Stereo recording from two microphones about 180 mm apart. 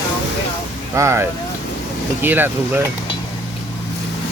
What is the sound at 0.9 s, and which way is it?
Speech, 15° right (ahead or behind).